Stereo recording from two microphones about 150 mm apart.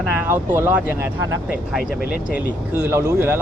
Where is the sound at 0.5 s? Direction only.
15° right (ahead or behind).